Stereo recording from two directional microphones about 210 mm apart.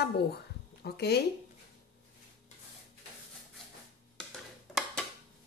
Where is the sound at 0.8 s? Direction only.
50° left (ahead or behind).